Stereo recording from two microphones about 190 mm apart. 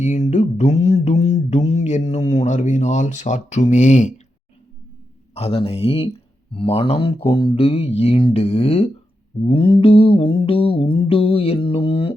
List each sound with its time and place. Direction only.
0.0 s mantra: 40° left (ahead or behind)
5.3 s speech: 30° left (ahead or behind)
9.4 s mantra: 25° left (ahead or behind)